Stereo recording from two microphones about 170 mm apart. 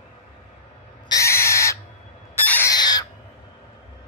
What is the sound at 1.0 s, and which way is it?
Owl, 20° left (ahead or behind).